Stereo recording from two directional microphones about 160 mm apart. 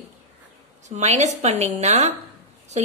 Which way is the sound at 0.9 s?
45° right (ahead or behind).